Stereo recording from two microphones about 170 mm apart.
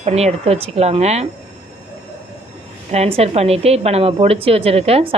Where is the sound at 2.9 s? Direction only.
40° right (ahead or behind).